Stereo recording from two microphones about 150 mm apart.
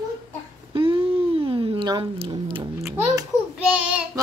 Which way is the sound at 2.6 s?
20° right (ahead or behind).